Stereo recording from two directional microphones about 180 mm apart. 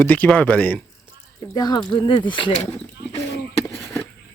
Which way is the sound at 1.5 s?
25° left (ahead or behind).